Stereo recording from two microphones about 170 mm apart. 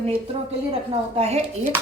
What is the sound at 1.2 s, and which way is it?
Speech, 40° right (ahead or behind).